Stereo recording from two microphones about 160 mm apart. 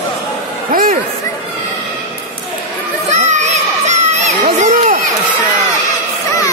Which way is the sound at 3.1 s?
45° right (ahead or behind).